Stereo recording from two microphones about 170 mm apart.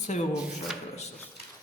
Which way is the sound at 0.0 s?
45° left (ahead or behind).